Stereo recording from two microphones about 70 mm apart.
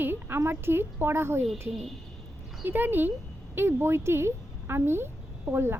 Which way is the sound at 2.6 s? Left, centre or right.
Right.